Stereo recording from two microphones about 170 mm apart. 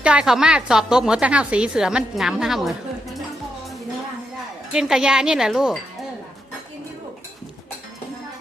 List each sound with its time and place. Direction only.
0.0 s a woman's voice: 5° right (ahead or behind)
4.7 s a woman's voice: 5° right (ahead or behind)